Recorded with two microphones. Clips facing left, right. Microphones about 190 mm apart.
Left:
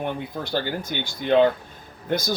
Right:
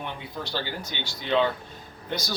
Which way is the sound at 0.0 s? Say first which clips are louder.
Left 6 dB; 50° left (ahead or behind).